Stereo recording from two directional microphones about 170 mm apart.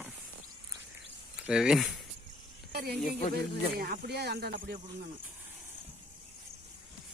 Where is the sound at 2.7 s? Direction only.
65° right (ahead or behind).